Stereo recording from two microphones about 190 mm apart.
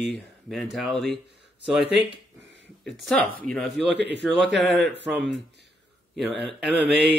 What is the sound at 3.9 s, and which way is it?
Speech, 65° right (ahead or behind).